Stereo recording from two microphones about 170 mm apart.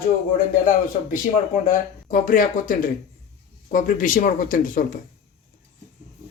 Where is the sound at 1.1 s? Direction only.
55° left (ahead or behind).